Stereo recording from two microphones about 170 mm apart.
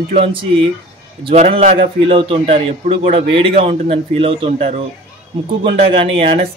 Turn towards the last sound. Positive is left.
turn(degrees=-35)  # may be behind; listen again after turning